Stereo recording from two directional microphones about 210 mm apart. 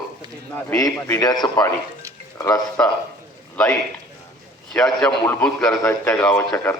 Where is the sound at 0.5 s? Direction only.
15° left (ahead or behind).